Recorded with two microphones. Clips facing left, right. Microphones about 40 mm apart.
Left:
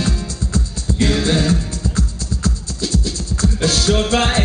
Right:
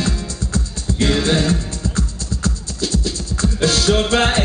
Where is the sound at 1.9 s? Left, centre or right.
Right.